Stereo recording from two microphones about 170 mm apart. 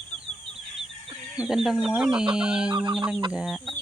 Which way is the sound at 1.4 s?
Centre (ahead or behind).